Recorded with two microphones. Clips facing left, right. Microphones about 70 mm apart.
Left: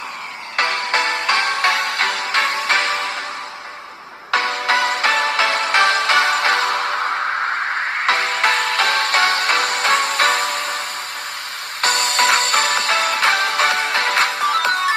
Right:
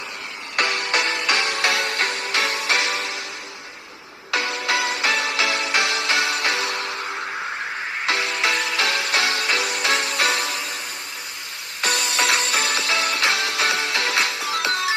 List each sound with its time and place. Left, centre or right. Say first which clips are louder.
0.5 s music: left 3 dB; left
4.3 s music: left 5 dB; left
8.0 s music: left 4 dB; left
11.8 s music: left 5 dB; left